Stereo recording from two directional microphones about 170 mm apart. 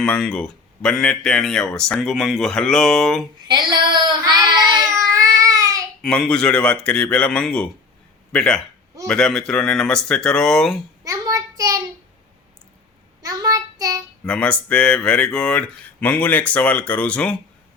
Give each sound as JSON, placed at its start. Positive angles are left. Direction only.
{"t": 0.0, "sound": "speech", "side_deg": 5}
{"t": 3.4, "sound": "child singing", "side_deg": -25}
{"t": 6.0, "sound": "speech", "side_deg": 5}
{"t": 11.0, "sound": "child singing", "side_deg": -20}
{"t": 13.2, "sound": "child singing", "side_deg": -20}
{"t": 14.3, "sound": "speech", "side_deg": 5}